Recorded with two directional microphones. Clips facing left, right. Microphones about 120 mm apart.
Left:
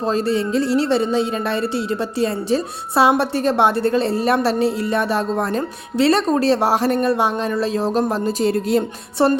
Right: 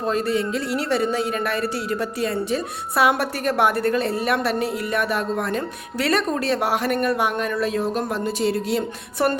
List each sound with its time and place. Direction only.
0.0 s speech: 30° left (ahead or behind)
9.1 s speech: 30° left (ahead or behind)